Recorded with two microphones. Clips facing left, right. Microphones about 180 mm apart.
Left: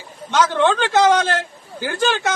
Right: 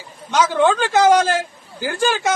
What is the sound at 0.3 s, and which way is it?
A man's voice, 10° right (ahead or behind).